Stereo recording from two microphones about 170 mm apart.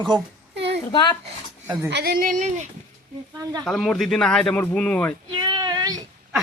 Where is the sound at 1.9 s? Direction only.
75° right (ahead or behind); by 2.6 s 45° right (ahead or behind).